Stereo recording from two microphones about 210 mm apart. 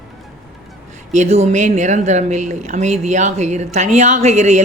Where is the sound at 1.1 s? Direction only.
35° right (ahead or behind).